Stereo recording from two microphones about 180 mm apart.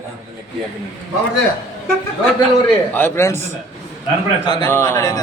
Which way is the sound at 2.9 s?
15° left (ahead or behind).